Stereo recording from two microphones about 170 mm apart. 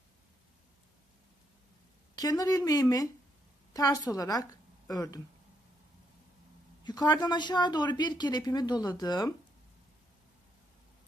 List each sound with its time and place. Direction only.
2.1 s a woman's voice: 20° left (ahead or behind)
6.8 s speech: 25° left (ahead or behind)